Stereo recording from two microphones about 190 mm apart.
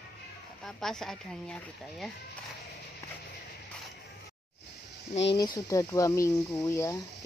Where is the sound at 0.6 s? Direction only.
Centre (ahead or behind).